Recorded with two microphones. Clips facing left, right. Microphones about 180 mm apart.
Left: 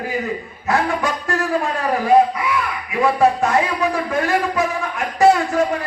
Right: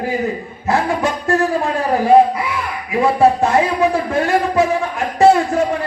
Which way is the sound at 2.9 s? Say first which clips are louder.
Right 3 dB; 25° right (ahead or behind).